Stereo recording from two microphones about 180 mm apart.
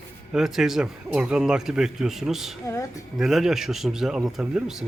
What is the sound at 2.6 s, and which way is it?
Speech, 15° left (ahead or behind).